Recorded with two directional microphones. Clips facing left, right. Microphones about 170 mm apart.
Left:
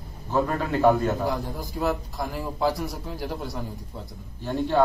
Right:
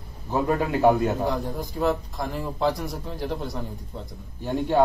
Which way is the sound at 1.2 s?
Centre (ahead or behind).